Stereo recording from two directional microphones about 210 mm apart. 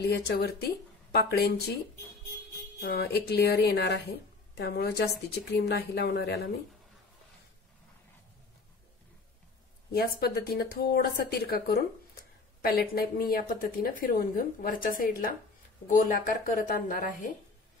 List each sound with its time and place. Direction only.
0.0 s speech: 50° left (ahead or behind)
2.8 s speech: 50° left (ahead or behind)
9.9 s speech: 45° left (ahead or behind)